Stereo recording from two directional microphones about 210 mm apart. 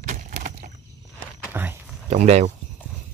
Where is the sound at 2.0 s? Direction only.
30° right (ahead or behind).